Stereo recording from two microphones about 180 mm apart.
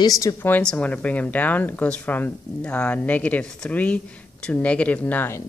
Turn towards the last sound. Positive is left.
turn(degrees=10)  # may be behind; listen again after turning